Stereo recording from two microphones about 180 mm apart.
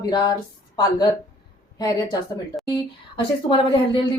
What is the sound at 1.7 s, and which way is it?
A woman's voice, 20° left (ahead or behind).